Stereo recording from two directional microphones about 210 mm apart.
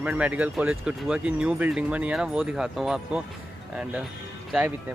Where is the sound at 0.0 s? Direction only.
5° right (ahead or behind).